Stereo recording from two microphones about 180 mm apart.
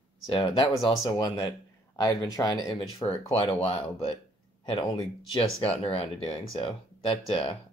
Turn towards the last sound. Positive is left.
turn(degrees=30)  # may be behind; listen again after turning